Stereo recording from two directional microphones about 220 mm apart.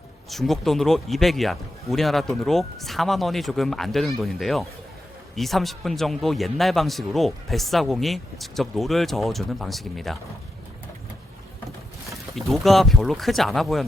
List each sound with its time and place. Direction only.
0.3 s a man's voice: centre (ahead or behind)
12.5 s a man's voice: centre (ahead or behind)